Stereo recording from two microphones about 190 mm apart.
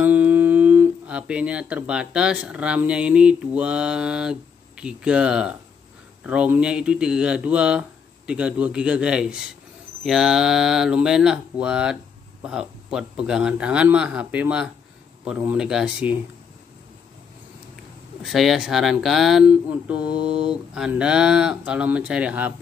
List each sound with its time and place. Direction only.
0.0 s speech: 10° right (ahead or behind)
18.2 s speech: centre (ahead or behind)